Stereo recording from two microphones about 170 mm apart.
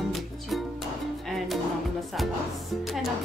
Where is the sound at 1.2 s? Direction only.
Centre (ahead or behind).